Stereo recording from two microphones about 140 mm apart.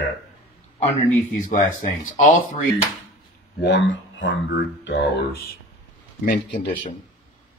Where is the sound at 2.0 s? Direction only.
70° left (ahead or behind).